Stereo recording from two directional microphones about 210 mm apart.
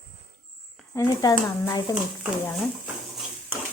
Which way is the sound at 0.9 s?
15° left (ahead or behind).